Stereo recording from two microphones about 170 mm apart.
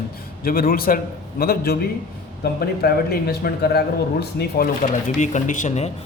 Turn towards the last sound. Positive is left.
turn(degrees=40)  # may be behind; listen again after turning